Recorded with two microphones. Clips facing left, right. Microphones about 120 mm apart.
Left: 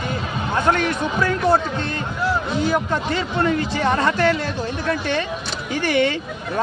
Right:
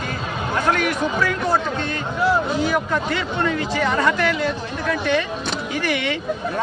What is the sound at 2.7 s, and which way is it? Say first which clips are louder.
Speech: even; 30° left (ahead or behind).